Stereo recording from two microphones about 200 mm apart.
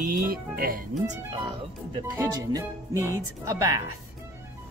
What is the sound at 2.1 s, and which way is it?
Speech, 15° right (ahead or behind).